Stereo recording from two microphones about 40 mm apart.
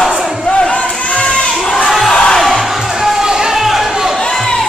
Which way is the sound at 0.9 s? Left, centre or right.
Left.